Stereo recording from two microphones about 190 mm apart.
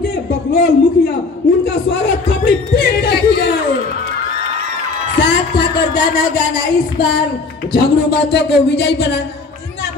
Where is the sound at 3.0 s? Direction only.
60° left (ahead or behind).